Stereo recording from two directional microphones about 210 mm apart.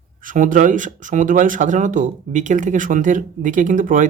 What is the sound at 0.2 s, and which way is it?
Speech, 40° right (ahead or behind).